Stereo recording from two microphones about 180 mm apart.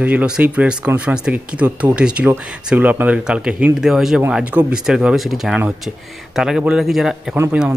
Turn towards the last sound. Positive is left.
turn(degrees=-10)  # may be behind; listen again after turning